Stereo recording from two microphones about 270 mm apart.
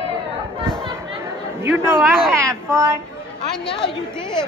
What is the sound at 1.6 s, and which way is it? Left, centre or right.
A man's voice, centre.